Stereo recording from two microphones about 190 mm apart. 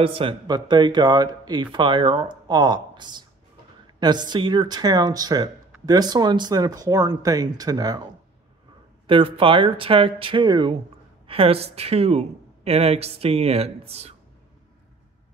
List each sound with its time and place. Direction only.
0.0 s speech: 30° right (ahead or behind)
9.0 s speech: 25° right (ahead or behind)